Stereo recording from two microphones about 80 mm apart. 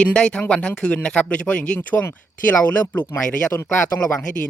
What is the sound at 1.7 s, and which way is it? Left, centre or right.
Speech, left.